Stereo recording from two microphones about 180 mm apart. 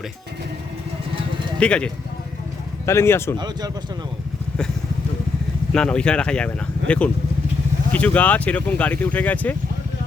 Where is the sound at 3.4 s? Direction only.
25° right (ahead or behind).